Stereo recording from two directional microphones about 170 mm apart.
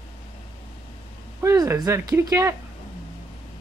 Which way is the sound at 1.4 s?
20° right (ahead or behind).